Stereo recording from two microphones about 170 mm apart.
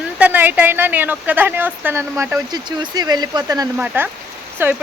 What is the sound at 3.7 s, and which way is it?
Speech, 10° right (ahead or behind).